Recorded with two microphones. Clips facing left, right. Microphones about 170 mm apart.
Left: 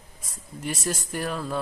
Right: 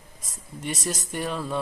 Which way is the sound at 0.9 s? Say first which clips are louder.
Even; 5° left (ahead or behind).